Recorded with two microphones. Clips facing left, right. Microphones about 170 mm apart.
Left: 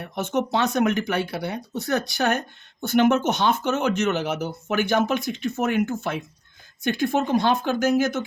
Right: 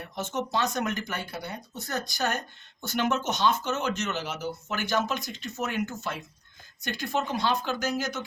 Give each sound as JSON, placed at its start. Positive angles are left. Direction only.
{"t": 0.0, "sound": "speech", "side_deg": 60}